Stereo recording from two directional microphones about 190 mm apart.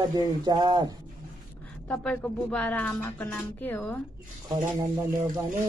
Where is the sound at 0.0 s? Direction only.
20° right (ahead or behind).